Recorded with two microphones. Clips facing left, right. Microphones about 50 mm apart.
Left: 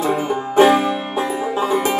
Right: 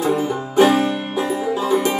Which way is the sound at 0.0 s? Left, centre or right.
Left.